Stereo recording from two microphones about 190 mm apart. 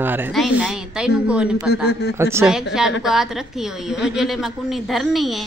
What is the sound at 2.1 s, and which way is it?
Speech, 15° right (ahead or behind).